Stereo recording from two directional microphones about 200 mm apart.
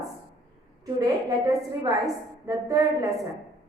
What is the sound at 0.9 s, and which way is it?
A woman's voice, 20° right (ahead or behind).